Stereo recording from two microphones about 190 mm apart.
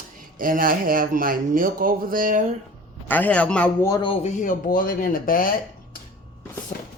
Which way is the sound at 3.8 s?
20° left (ahead or behind).